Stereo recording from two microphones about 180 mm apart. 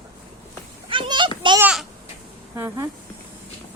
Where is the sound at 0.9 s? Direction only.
25° right (ahead or behind).